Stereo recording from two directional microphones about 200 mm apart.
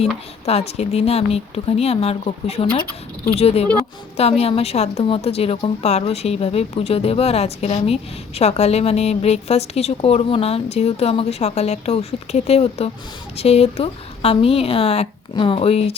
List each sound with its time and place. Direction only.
0.4 s a woman's voice: 30° left (ahead or behind)